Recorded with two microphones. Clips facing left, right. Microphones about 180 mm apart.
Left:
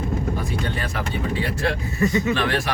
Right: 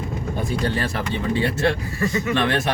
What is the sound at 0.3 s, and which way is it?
Speech, 30° right (ahead or behind).